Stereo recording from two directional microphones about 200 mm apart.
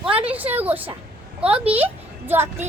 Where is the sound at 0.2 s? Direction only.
10° right (ahead or behind).